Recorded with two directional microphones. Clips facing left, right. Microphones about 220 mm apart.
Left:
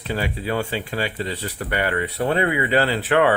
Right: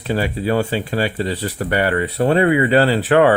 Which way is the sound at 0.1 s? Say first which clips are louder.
Right 6 dB; 35° right (ahead or behind).